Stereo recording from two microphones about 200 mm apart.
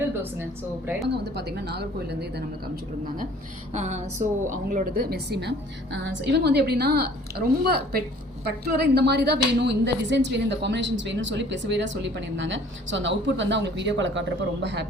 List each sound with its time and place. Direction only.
1.0 s a woman's voice: 55° right (ahead or behind)
3.7 s a woman's voice: 35° right (ahead or behind); by 14.8 s 60° right (ahead or behind)